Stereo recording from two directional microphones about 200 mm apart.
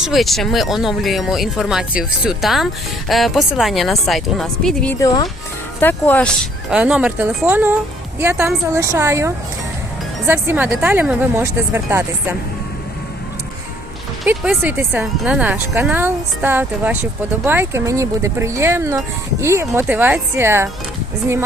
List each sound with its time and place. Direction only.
0.0 s speech: centre (ahead or behind)
4.9 s speech: 20° left (ahead or behind)
6.7 s speech: 5° right (ahead or behind)
14.3 s speech: 5° right (ahead or behind)